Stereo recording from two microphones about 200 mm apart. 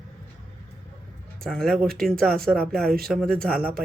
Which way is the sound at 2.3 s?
50° right (ahead or behind).